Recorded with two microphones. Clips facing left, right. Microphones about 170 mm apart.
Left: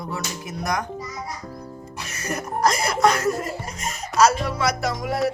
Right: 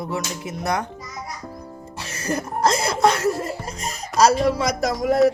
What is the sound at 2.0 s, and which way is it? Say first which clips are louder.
Speech: right 4 dB; 30° right (ahead or behind).